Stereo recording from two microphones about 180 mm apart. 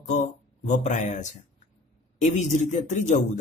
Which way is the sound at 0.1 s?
40° left (ahead or behind).